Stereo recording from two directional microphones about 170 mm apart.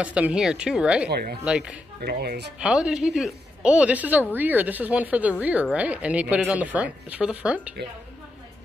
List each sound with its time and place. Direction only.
0.0 s a woman's voice: 5° right (ahead or behind)
1.0 s speech: 70° right (ahead or behind)
1.4 s a woman's voice: 5° right (ahead or behind)
2.0 s speech: 65° right (ahead or behind)
2.6 s a woman's voice: 5° right (ahead or behind)